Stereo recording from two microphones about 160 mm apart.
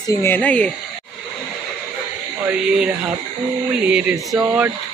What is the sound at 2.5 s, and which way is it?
Speech, 5° right (ahead or behind).